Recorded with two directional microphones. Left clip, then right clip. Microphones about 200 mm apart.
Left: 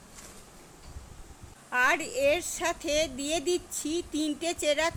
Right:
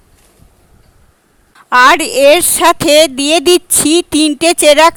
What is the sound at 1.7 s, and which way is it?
A woman's voice, 50° right (ahead or behind).